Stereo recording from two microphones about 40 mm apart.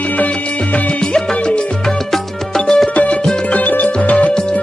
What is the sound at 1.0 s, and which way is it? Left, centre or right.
Music, left.